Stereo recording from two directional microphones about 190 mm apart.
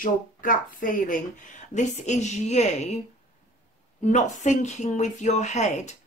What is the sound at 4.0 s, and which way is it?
Speech, 40° left (ahead or behind).